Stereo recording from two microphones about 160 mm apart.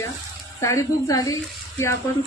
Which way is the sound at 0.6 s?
20° left (ahead or behind).